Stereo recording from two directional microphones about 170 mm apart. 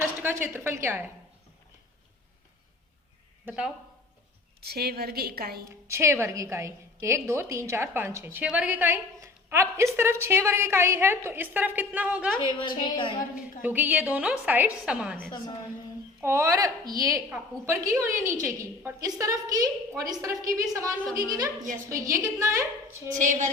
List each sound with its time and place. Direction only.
0.4 s a woman's voice: 15° right (ahead or behind)
3.4 s speech: 5° right (ahead or behind)
4.6 s a woman's voice: 65° right (ahead or behind)
5.6 s a woman's voice: 15° right (ahead or behind)
12.5 s a woman's voice: 25° left (ahead or behind)
13.6 s a woman's voice: 10° right (ahead or behind)
16.2 s a woman's voice: 15° right (ahead or behind)
23.1 s a sound: 45° right (ahead or behind)